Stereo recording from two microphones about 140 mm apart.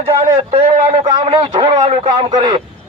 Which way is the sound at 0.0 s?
40° right (ahead or behind).